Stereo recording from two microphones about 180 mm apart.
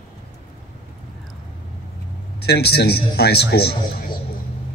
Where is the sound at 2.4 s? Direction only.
65° left (ahead or behind).